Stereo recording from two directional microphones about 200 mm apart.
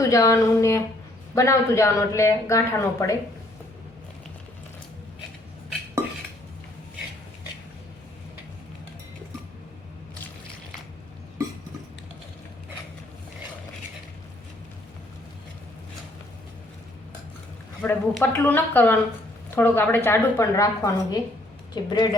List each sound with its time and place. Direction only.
0.0 s a woman's voice: 15° left (ahead or behind)
17.8 s a woman's voice: 10° left (ahead or behind)